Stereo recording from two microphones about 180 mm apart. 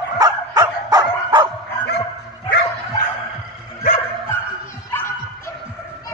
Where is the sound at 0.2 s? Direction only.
20° right (ahead or behind).